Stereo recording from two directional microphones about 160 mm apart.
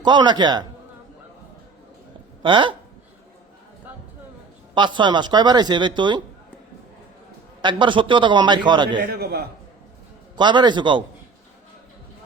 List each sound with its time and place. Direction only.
0.0 s speech: 30° right (ahead or behind)
2.4 s speech: 30° right (ahead or behind)
4.7 s speech: 30° right (ahead or behind)
7.6 s speech: 30° right (ahead or behind)
9.0 s a man's voice: 75° right (ahead or behind)
10.3 s speech: 30° right (ahead or behind)